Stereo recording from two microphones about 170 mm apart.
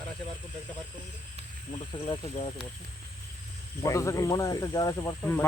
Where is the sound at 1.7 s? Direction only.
30° left (ahead or behind).